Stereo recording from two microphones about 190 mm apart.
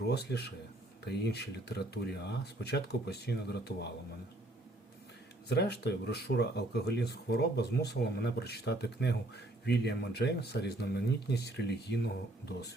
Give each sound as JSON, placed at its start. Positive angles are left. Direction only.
{"t": 0.0, "sound": "speech", "side_deg": 60}
{"t": 5.5, "sound": "speech", "side_deg": 60}